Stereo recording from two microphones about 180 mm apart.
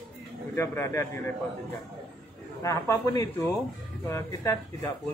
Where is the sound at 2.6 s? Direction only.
15° left (ahead or behind).